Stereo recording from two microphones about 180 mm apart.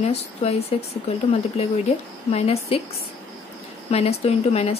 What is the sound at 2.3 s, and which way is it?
Speech, 35° left (ahead or behind).